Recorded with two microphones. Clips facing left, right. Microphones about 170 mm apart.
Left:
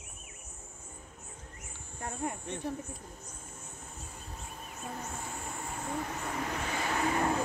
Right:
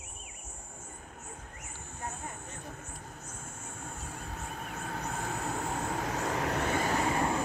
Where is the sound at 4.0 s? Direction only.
70° right (ahead or behind).